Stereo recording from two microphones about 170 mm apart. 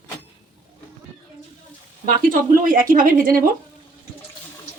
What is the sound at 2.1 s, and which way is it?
A woman's voice, 55° right (ahead or behind).